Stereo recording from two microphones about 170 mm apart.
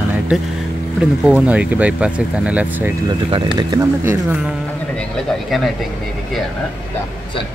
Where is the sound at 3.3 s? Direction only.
30° right (ahead or behind).